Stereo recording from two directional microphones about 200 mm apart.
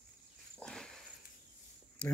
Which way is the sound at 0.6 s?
5° left (ahead or behind).